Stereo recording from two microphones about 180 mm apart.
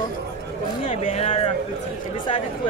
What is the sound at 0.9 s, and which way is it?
Speech, 35° left (ahead or behind).